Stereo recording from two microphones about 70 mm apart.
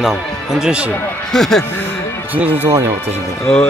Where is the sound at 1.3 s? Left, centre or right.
Centre.